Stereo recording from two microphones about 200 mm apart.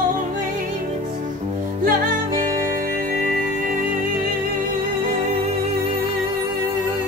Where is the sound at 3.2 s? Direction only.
40° right (ahead or behind).